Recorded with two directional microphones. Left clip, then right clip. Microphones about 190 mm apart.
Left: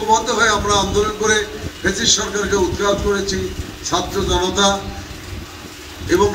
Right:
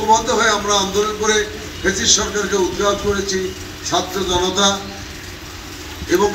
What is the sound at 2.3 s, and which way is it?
A man's voice, 15° left (ahead or behind).